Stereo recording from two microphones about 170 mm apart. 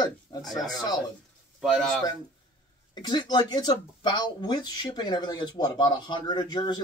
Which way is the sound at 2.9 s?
25° left (ahead or behind).